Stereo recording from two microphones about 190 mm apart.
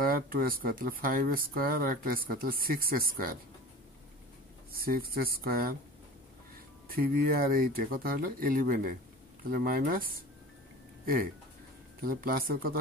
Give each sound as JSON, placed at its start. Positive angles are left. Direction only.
{"t": 0.0, "sound": "speech", "side_deg": -50}
{"t": 4.7, "sound": "speech", "side_deg": -50}
{"t": 6.9, "sound": "speech", "side_deg": -50}
{"t": 12.0, "sound": "speech", "side_deg": -50}